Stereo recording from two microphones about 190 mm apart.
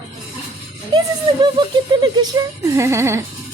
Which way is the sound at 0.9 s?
20° right (ahead or behind).